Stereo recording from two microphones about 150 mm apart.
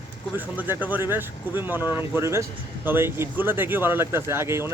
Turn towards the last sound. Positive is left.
turn(degrees=-15)  # may be behind; listen again after turning